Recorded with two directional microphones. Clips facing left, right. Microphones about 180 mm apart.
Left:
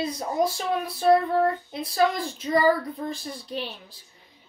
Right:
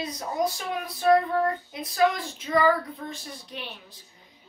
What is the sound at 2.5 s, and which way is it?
Child singing, 35° left (ahead or behind).